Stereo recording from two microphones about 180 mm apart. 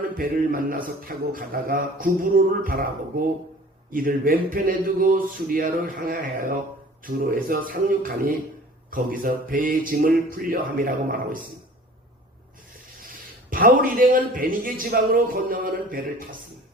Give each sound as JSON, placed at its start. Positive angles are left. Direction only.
{"t": 0.0, "sound": "a man's voice", "side_deg": -50}
{"t": 3.9, "sound": "a man's voice", "side_deg": -50}
{"t": 13.5, "sound": "a man's voice", "side_deg": -50}